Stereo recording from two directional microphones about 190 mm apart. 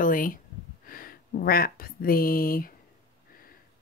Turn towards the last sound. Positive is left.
turn(degrees=50)  # may be behind; listen again after turning